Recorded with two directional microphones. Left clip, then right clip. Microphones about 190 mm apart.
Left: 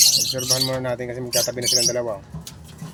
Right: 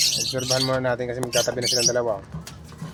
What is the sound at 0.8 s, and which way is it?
Speech, 25° left (ahead or behind).